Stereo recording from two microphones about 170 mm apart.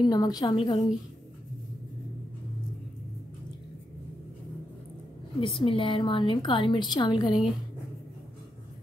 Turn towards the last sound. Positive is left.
turn(degrees=25)  # may be behind; listen again after turning